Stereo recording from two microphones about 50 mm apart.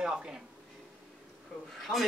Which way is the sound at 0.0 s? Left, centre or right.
Centre.